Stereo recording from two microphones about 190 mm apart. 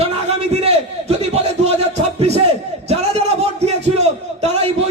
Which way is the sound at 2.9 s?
35° right (ahead or behind).